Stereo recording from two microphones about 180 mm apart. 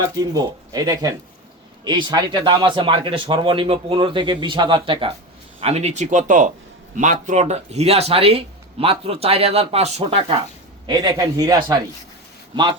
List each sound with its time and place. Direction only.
0.0 s speech: 20° right (ahead or behind)